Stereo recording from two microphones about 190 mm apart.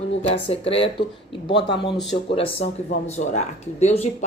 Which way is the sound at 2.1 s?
30° left (ahead or behind).